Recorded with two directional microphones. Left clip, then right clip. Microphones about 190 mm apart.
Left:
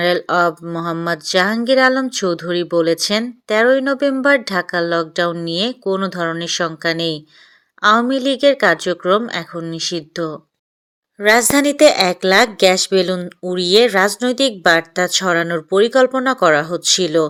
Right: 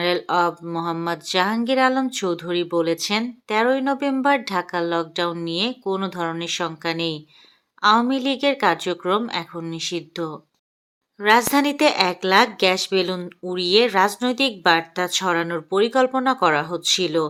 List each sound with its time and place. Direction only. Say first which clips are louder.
0.0 s speech: left 5 dB; 20° left (ahead or behind)